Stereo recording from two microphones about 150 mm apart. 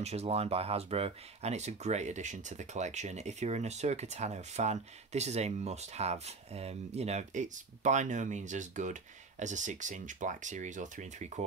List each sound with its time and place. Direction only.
0.0 s speech: 45° right (ahead or behind)